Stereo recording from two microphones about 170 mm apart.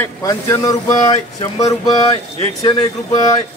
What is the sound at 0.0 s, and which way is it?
Speech, 20° left (ahead or behind).